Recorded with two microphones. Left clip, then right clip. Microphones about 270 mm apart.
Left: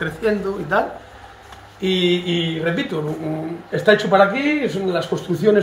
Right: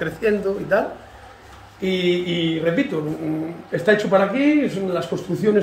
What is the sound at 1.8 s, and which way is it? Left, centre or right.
Speech, centre.